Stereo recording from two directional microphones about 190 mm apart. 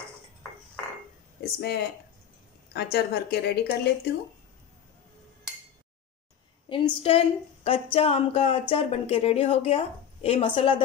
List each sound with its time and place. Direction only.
1.4 s speech: 55° left (ahead or behind)
6.7 s a woman's voice: 30° left (ahead or behind)